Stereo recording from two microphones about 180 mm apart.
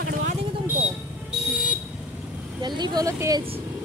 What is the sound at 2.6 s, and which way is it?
Speech, 25° right (ahead or behind).